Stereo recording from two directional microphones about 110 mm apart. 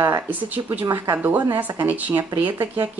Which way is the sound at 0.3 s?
15° right (ahead or behind).